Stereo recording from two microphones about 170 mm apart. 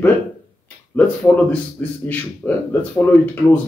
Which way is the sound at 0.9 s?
10° left (ahead or behind).